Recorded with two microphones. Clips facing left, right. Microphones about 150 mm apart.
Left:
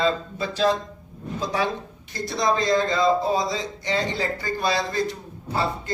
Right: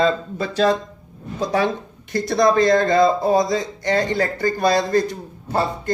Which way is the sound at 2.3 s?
55° right (ahead or behind).